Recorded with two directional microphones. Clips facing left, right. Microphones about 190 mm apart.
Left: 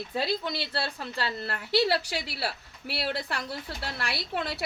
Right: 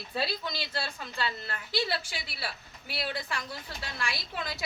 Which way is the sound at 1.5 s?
70° left (ahead or behind).